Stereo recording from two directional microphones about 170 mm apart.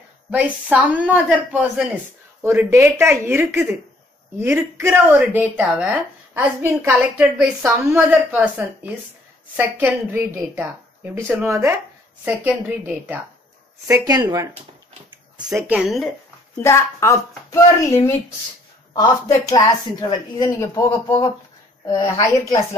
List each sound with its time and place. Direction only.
0.3 s speech: 10° right (ahead or behind)
13.8 s speech: 20° right (ahead or behind); by 16.1 s centre (ahead or behind)
16.5 s speech: 15° left (ahead or behind)
19.5 s speech: 25° left (ahead or behind)